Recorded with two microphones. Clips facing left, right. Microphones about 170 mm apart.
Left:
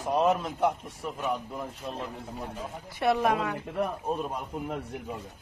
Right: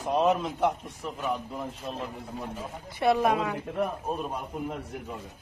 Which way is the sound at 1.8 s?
Centre (ahead or behind).